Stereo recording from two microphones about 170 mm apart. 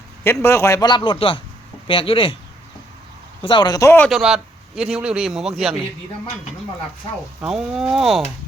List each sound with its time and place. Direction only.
0.4 s speech: 15° left (ahead or behind)
3.4 s speech: 30° left (ahead or behind)
4.0 s a man's voice: centre (ahead or behind)
7.4 s a man's voice: 5° right (ahead or behind)